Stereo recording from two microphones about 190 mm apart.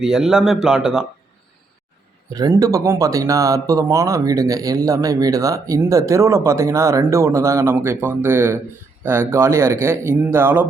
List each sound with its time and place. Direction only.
0.0 s speech: centre (ahead or behind)
2.3 s speech: 20° right (ahead or behind)